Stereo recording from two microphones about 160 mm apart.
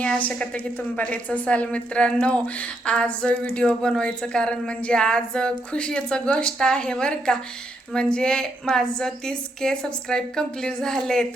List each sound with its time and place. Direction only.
0.0 s a woman's voice: 10° left (ahead or behind)